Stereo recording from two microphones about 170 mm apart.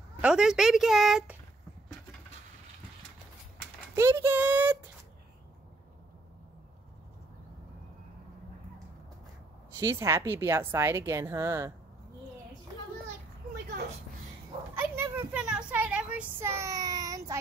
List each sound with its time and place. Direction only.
0.2 s speech: 5° right (ahead or behind)
3.9 s a woman's voice: 15° right (ahead or behind)
9.8 s a woman's voice: 15° right (ahead or behind)
14.8 s a sound: 10° right (ahead or behind)